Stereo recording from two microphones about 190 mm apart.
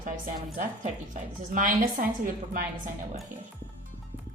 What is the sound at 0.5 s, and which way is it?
A woman's voice, 40° right (ahead or behind).